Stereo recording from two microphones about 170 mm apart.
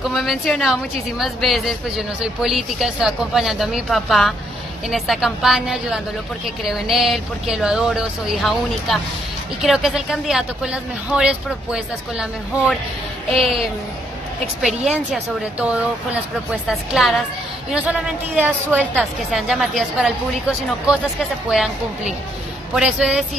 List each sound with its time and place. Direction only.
0.1 s a woman's voice: centre (ahead or behind)
14.9 s a woman's voice: 5° right (ahead or behind)